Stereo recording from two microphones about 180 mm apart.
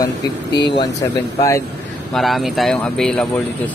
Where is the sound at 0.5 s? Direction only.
70° left (ahead or behind).